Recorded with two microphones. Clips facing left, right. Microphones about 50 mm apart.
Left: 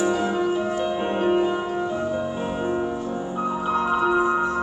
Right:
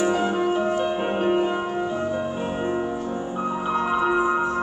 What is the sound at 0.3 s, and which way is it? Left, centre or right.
Music, right.